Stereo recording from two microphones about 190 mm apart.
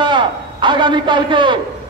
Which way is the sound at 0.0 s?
25° right (ahead or behind).